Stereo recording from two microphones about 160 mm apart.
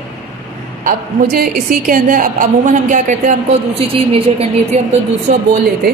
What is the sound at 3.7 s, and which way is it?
A woman's voice, 35° right (ahead or behind).